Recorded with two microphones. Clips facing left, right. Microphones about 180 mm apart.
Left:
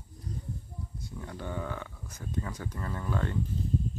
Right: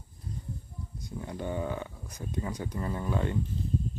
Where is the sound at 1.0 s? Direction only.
20° right (ahead or behind).